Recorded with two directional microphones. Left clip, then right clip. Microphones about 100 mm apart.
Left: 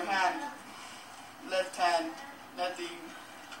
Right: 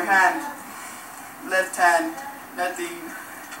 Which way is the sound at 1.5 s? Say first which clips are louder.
Right 10 dB; 45° right (ahead or behind).